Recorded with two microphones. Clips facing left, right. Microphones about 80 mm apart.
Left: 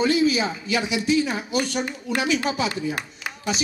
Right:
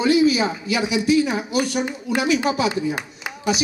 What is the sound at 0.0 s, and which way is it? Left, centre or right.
Speech, centre.